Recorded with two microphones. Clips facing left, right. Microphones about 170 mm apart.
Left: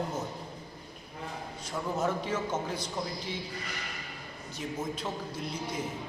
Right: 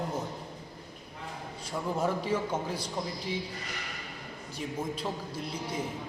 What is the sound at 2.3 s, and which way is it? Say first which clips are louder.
Speech: right 2 dB; 10° right (ahead or behind).